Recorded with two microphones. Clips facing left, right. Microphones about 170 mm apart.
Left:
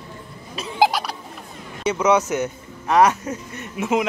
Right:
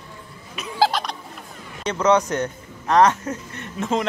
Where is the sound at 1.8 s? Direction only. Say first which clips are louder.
Even; 10° left (ahead or behind).